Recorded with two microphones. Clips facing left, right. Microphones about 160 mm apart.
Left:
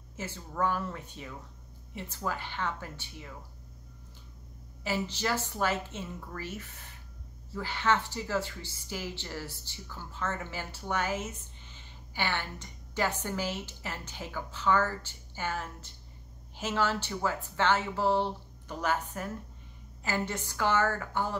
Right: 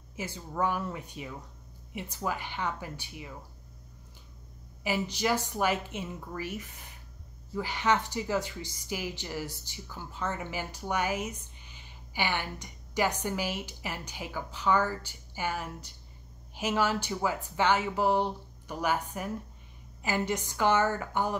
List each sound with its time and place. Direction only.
0.1 s speech: 15° right (ahead or behind)
4.8 s speech: 15° right (ahead or behind)